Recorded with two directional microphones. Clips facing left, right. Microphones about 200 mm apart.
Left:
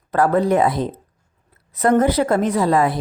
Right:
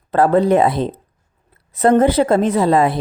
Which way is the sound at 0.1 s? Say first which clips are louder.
Right 3 dB; 30° right (ahead or behind).